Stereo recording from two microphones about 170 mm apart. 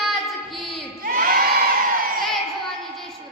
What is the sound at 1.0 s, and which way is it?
Crowd, 60° right (ahead or behind).